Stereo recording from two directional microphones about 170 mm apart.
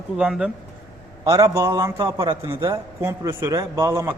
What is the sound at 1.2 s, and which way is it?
A man's voice, 20° right (ahead or behind).